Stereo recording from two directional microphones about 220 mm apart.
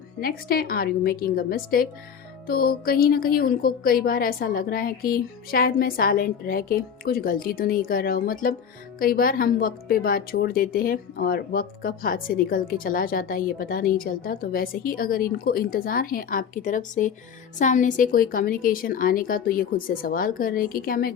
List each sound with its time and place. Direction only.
0.2 s a woman's voice: 40° left (ahead or behind)